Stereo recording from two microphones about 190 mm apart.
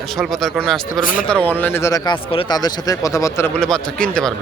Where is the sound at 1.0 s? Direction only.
45° left (ahead or behind).